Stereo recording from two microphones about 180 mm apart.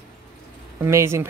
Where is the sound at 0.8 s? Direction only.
15° right (ahead or behind).